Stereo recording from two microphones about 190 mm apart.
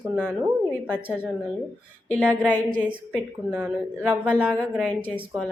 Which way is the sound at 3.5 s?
10° right (ahead or behind).